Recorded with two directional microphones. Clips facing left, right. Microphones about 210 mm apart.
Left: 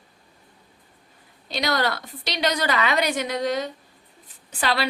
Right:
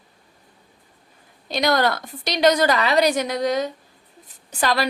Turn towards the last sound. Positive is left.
turn(degrees=-45)  # may be behind; listen again after turning